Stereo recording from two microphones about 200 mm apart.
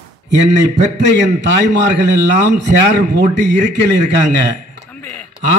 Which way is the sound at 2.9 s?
60° right (ahead or behind).